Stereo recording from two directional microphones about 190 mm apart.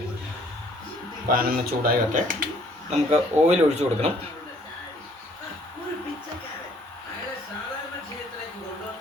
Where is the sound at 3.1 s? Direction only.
35° right (ahead or behind).